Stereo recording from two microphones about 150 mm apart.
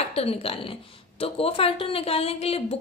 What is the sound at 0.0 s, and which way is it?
A woman's voice, 45° left (ahead or behind).